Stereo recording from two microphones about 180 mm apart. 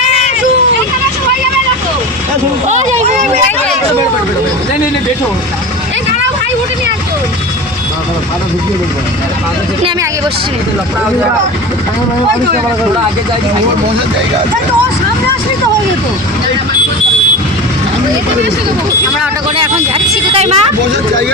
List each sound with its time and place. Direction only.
19.5 s speech: 30° right (ahead or behind)